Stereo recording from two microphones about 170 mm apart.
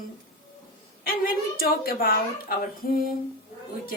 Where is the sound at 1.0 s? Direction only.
60° left (ahead or behind).